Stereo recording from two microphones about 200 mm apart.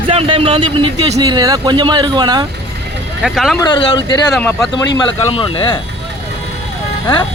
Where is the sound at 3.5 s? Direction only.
20° left (ahead or behind).